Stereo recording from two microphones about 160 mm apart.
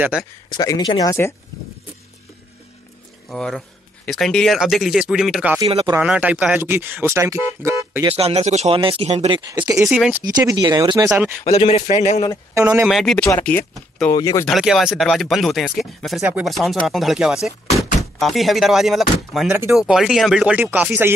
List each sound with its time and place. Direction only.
0.0 s speech: 5° right (ahead or behind)
0.5 s speech: 25° left (ahead or behind)
3.3 s speech: 5° left (ahead or behind); by 8.0 s 15° right (ahead or behind)
8.0 s speech: 35° right (ahead or behind)
9.5 s speech: 20° right (ahead or behind)
11.1 s speech: 10° right (ahead or behind)
11.4 s speech: 40° left (ahead or behind)
12.8 s speech: centre (ahead or behind)
14.1 s speech: 25° left (ahead or behind)
14.4 s speech: centre (ahead or behind)